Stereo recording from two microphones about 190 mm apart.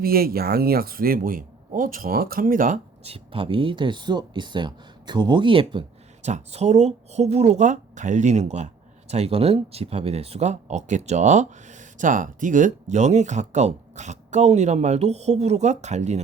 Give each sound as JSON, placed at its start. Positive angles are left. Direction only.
{"t": 0.0, "sound": "speech", "side_deg": -50}
{"t": 3.0, "sound": "speech", "side_deg": -30}